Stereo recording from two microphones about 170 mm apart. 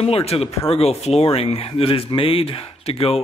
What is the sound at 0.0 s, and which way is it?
Speech, 35° left (ahead or behind).